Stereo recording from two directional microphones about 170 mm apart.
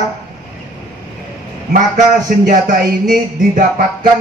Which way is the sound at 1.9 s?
50° right (ahead or behind).